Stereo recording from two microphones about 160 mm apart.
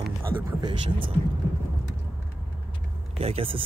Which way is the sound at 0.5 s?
30° right (ahead or behind).